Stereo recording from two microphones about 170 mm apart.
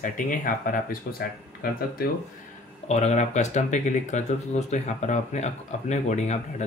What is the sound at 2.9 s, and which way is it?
Speech, 40° left (ahead or behind).